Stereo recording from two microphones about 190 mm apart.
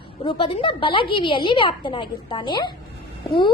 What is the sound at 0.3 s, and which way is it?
A woman's voice, 30° left (ahead or behind).